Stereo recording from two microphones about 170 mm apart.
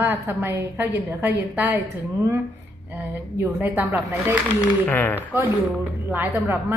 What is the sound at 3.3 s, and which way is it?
A woman's voice, 10° right (ahead or behind).